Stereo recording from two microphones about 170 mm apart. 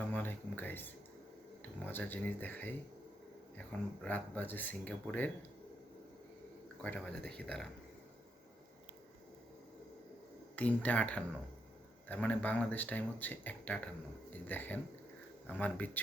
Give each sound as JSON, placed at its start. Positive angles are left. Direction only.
{"t": 0.1, "sound": "speech", "side_deg": 10}
{"t": 6.8, "sound": "speech", "side_deg": 5}
{"t": 10.5, "sound": "speech", "side_deg": 10}